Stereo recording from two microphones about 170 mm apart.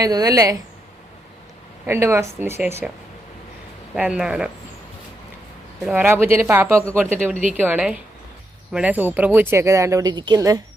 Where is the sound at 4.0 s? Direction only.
5° right (ahead or behind).